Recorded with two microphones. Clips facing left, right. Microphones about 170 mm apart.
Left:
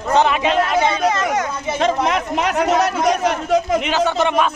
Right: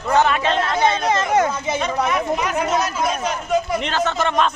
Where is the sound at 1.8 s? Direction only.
75° left (ahead or behind).